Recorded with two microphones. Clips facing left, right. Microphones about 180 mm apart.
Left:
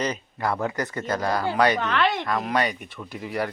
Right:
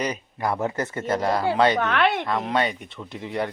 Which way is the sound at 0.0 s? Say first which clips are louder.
Even; 15° right (ahead or behind).